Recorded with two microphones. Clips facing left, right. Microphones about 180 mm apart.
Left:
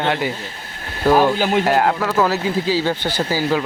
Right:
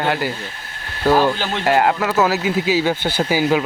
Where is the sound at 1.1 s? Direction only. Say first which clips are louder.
Left 2 dB; 15° left (ahead or behind).